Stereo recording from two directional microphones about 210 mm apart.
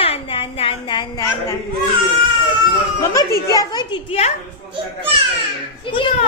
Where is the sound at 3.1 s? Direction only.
15° left (ahead or behind).